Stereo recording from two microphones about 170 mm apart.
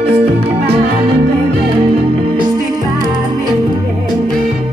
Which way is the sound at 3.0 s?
25° right (ahead or behind).